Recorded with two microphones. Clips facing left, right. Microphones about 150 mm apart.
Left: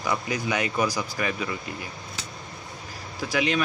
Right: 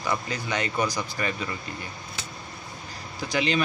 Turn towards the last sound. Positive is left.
turn(degrees=5)  # may be behind; listen again after turning